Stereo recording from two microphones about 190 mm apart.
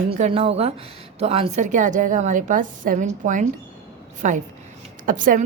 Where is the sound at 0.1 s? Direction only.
30° right (ahead or behind).